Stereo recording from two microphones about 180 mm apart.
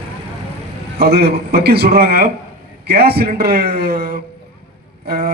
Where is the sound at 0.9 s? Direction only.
65° right (ahead or behind).